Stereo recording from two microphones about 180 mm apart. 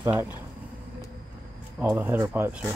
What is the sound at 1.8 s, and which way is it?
Speech, 10° right (ahead or behind).